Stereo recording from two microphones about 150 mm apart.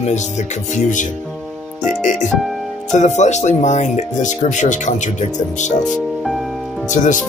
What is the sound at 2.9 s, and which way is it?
Speech, 50° left (ahead or behind).